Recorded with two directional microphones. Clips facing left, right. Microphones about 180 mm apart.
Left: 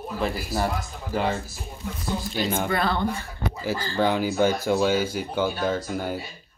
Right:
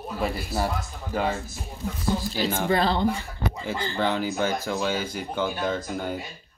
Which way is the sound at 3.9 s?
10° left (ahead or behind).